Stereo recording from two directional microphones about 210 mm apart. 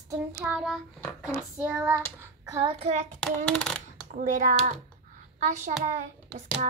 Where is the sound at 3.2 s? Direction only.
5° left (ahead or behind).